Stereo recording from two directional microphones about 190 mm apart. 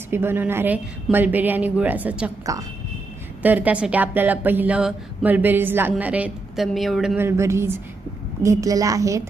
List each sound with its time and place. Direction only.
0.1 s speech: 10° right (ahead or behind)
7.2 s speech: 15° right (ahead or behind)